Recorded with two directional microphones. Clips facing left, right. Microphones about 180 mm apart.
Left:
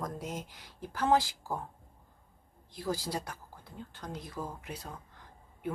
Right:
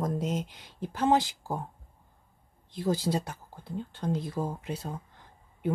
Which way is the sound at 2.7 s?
25° right (ahead or behind).